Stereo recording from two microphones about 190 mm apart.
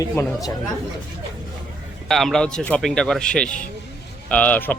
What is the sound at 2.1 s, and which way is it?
Speech, centre (ahead or behind).